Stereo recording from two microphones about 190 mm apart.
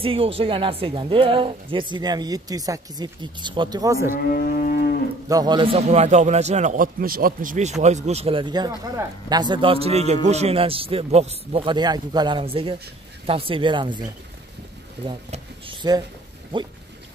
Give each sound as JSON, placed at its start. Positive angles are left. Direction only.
{"t": 0.0, "sound": "speech", "side_deg": -30}
{"t": 4.1, "sound": "cattle", "side_deg": 50}
{"t": 5.3, "sound": "a man's voice", "side_deg": -20}
{"t": 15.0, "sound": "speech", "side_deg": -25}